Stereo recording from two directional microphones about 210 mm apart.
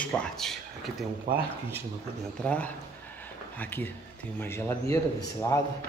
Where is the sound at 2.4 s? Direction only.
5° left (ahead or behind).